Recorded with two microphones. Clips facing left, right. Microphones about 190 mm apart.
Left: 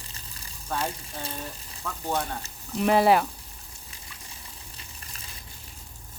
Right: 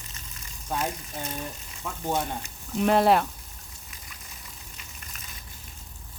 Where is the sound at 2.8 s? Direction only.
Centre (ahead or behind).